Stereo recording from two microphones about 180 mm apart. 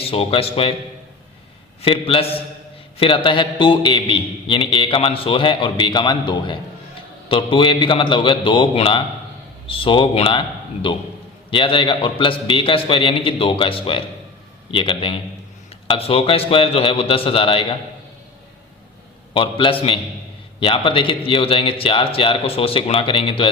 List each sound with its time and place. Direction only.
0.0 s a man's voice: 30° left (ahead or behind)
1.8 s a man's voice: 30° left (ahead or behind)
19.3 s a man's voice: 30° left (ahead or behind)